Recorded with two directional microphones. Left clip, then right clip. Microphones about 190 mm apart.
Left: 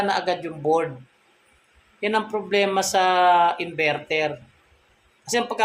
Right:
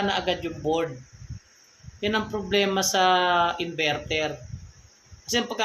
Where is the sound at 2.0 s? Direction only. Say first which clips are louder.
Left 3 dB; 20° right (ahead or behind).